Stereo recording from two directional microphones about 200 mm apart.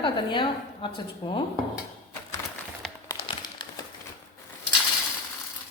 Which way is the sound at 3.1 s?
25° left (ahead or behind).